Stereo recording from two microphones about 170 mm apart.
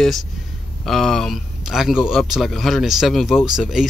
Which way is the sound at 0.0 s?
Centre (ahead or behind).